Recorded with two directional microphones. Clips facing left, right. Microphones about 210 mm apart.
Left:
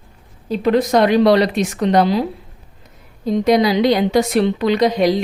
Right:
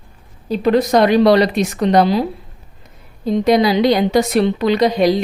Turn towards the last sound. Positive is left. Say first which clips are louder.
# right 1 dB
turn(degrees=-35)  # may be behind; listen again after turning